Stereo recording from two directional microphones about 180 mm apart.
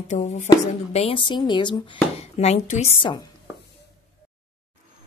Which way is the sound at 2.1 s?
35° left (ahead or behind).